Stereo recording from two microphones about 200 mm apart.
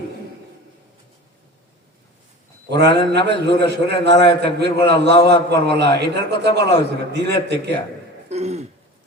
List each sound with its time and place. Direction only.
3.1 s a man's voice: 55° right (ahead or behind)
8.3 s throat clearing: 35° right (ahead or behind)